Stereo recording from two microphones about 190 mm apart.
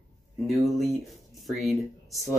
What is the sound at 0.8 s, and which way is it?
Speech, centre (ahead or behind).